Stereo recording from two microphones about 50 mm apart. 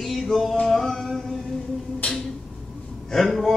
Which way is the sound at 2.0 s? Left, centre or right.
Left.